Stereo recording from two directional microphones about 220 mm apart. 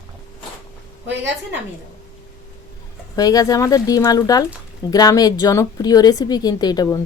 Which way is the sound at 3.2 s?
15° left (ahead or behind).